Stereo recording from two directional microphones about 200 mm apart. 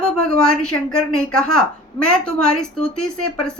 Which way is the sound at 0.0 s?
5° left (ahead or behind).